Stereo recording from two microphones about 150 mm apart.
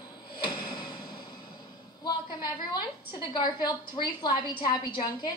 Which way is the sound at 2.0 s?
30° left (ahead or behind).